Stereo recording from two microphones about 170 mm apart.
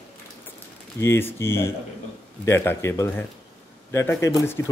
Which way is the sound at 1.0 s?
15° left (ahead or behind).